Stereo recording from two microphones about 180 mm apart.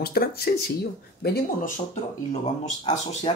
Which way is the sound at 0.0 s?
60° left (ahead or behind).